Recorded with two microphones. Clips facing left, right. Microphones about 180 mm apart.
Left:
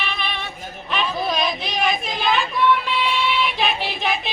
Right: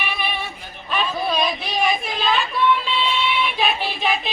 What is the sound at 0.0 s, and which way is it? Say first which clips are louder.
Female singing: right 1 dB; 10° right (ahead or behind).